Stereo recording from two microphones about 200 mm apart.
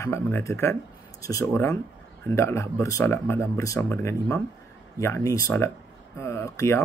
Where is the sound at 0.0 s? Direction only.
15° left (ahead or behind).